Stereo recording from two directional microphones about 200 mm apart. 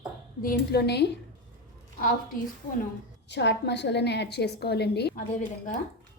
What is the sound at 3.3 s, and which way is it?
A woman's voice, 60° left (ahead or behind).